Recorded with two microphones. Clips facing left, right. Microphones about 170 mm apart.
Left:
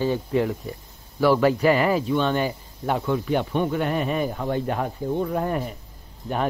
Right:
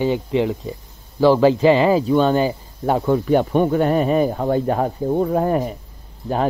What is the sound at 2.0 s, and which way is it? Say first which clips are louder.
Speech: right 6 dB; 40° right (ahead or behind).